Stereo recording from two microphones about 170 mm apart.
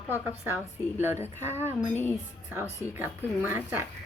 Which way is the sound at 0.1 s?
15° right (ahead or behind).